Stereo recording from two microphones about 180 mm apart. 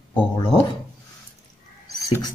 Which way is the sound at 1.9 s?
20° left (ahead or behind).